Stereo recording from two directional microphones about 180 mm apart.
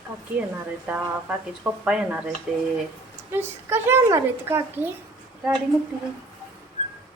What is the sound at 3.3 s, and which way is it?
A woman's voice, 15° right (ahead or behind).